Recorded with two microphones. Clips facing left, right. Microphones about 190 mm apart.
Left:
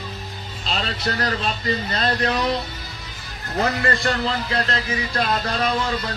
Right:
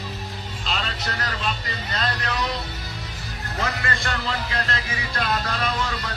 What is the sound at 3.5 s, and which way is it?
Speech, 35° left (ahead or behind).